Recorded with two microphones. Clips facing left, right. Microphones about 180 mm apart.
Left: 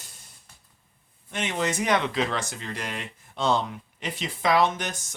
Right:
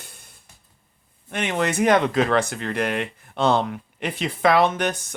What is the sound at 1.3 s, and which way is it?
Speech, 60° right (ahead or behind).